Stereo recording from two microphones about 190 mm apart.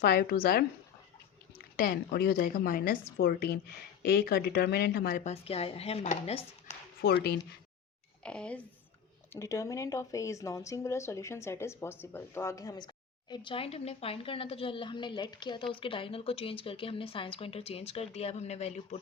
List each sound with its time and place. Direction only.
0.0 s speech: 55° left (ahead or behind)
1.7 s a woman's voice: 50° left (ahead or behind); by 6.7 s 35° left (ahead or behind)
7.0 s speech: 55° left (ahead or behind)
8.2 s a woman's voice: 5° left (ahead or behind); by 18.9 s 35° left (ahead or behind)